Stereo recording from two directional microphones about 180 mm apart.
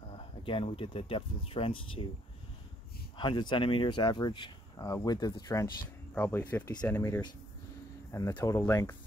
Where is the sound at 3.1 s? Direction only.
25° left (ahead or behind).